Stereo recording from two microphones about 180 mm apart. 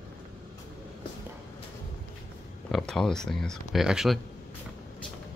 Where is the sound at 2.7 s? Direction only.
5° left (ahead or behind).